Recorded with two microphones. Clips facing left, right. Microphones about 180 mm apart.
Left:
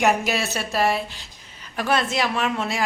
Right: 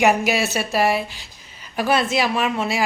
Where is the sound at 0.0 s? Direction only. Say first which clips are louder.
Right 3 dB; 5° right (ahead or behind).